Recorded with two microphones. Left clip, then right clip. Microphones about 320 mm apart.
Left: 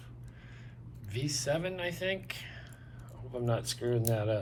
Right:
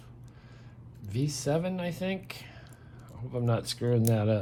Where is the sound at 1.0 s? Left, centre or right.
Centre.